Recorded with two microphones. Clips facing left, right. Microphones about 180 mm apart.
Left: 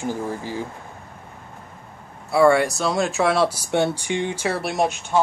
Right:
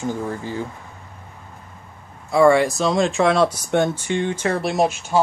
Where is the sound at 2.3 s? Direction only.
Centre (ahead or behind).